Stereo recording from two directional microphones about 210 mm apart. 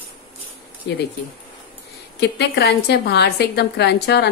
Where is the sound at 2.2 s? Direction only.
50° left (ahead or behind).